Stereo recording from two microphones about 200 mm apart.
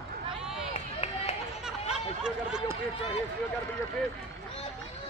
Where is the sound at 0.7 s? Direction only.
30° left (ahead or behind).